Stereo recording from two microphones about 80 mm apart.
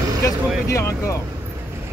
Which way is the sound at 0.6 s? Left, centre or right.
Left.